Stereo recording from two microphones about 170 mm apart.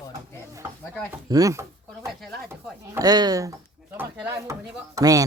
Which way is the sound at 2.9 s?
25° right (ahead or behind).